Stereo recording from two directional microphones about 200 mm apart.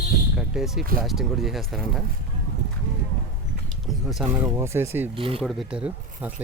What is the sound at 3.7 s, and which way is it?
Speech, centre (ahead or behind).